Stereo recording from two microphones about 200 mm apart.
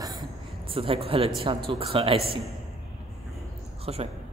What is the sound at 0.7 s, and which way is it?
A woman's voice, 25° right (ahead or behind).